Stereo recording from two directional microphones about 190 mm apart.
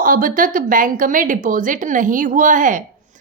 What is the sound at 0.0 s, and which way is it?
A woman's voice, 45° right (ahead or behind).